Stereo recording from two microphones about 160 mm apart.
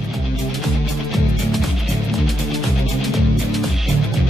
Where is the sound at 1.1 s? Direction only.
Centre (ahead or behind).